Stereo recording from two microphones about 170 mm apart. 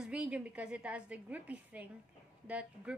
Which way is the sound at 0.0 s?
5° right (ahead or behind).